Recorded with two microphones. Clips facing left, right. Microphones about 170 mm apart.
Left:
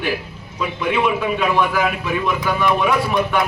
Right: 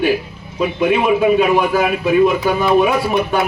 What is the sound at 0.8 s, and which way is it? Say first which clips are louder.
A man's voice: right 5 dB; 45° right (ahead or behind).